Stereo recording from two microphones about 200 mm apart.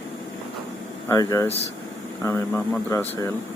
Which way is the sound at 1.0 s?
15° left (ahead or behind).